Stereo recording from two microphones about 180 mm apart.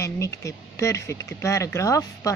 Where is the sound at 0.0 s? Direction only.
15° left (ahead or behind).